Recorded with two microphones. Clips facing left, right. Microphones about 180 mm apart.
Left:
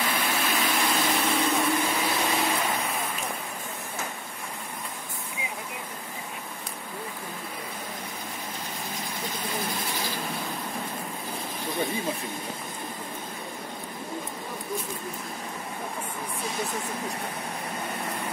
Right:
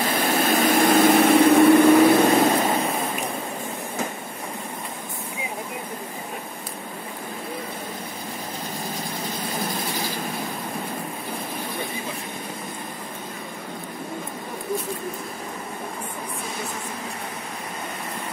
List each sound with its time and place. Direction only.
0.0 s vehicle: 45° right (ahead or behind)